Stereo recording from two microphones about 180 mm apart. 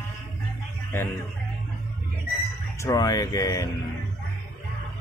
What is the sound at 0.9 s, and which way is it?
Music, 10° left (ahead or behind).